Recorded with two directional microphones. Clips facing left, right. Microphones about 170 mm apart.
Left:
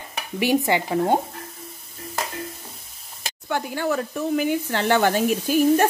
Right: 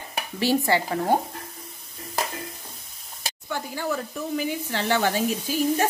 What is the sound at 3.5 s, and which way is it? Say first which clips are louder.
Speech: left 5 dB; 65° left (ahead or behind).